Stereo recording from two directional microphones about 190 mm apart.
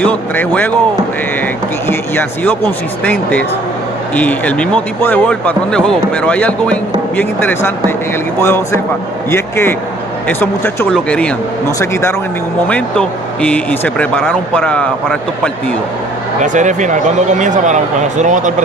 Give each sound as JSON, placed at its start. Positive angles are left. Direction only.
{"t": 0.0, "sound": "speech", "side_deg": 10}
{"t": 1.9, "sound": "a man's voice", "side_deg": 10}
{"t": 16.3, "sound": "speech", "side_deg": -40}